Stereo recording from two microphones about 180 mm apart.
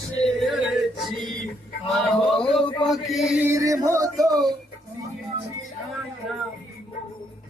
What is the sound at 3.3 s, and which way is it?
Music, 10° right (ahead or behind).